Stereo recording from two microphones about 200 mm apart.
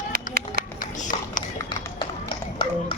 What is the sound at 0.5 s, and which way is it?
Run, 45° left (ahead or behind).